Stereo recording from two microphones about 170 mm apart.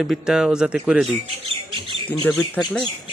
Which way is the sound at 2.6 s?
5° left (ahead or behind).